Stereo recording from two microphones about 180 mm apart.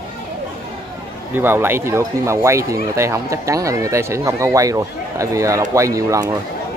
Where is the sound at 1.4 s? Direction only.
10° right (ahead or behind).